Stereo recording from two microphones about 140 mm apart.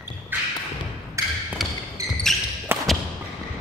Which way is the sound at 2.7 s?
15° right (ahead or behind).